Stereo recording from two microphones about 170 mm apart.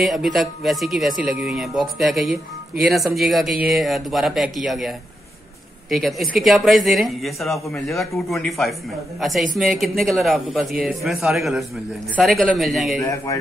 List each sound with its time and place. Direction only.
0.0 s a man's voice: centre (ahead or behind)
13.0 s speech: 20° left (ahead or behind)